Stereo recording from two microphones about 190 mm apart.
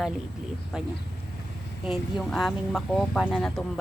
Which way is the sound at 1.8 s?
Centre (ahead or behind).